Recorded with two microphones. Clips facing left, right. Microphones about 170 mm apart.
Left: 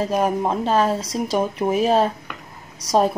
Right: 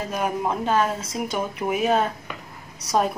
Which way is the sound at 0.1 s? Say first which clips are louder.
Left 5 dB; 30° left (ahead or behind).